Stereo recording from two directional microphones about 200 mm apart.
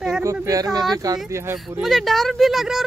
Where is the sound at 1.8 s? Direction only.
Centre (ahead or behind).